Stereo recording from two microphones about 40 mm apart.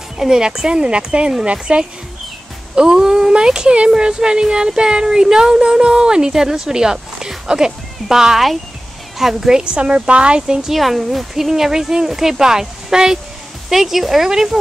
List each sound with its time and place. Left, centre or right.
0.2 s speech: centre
9.6 s speech: right
10.7 s speech: centre